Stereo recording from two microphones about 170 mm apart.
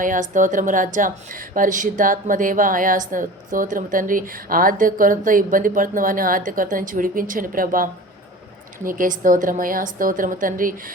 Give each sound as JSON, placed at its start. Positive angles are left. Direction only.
{"t": 0.0, "sound": "a woman's voice", "side_deg": -50}